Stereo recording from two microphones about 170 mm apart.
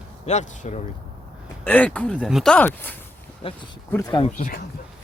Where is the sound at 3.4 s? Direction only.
35° left (ahead or behind).